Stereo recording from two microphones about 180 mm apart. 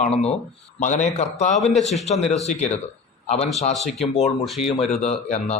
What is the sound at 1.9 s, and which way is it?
Speech, 40° left (ahead or behind).